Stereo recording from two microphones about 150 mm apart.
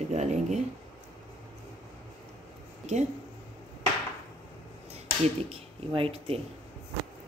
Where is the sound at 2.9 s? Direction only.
50° right (ahead or behind).